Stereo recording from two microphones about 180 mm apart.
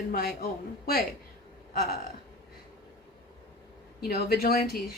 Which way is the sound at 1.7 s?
55° left (ahead or behind).